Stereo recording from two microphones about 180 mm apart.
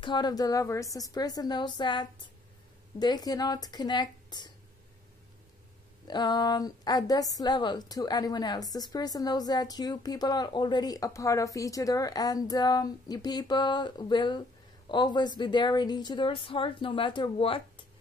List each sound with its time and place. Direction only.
0.0 s a woman's voice: 25° left (ahead or behind)
6.0 s a woman's voice: 25° left (ahead or behind)